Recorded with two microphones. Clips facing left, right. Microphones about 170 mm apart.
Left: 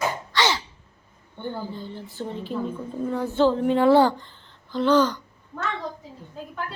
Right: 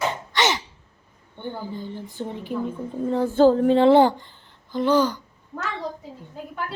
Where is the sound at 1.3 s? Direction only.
15° right (ahead or behind).